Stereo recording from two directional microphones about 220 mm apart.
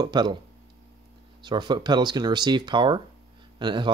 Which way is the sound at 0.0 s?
20° right (ahead or behind).